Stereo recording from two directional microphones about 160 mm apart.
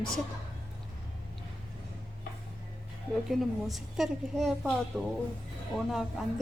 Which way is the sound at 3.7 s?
Centre (ahead or behind).